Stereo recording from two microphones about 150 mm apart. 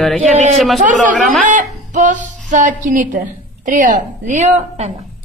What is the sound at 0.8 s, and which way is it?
Speech, 55° right (ahead or behind).